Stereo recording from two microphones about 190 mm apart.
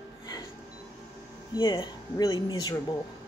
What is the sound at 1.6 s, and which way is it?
Speech, 25° left (ahead or behind).